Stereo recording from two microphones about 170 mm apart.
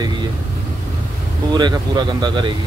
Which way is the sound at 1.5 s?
25° right (ahead or behind).